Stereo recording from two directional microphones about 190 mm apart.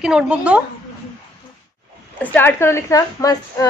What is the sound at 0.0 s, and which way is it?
Speech, 5° right (ahead or behind).